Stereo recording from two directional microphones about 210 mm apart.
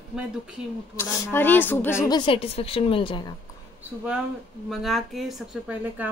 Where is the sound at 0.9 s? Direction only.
10° left (ahead or behind).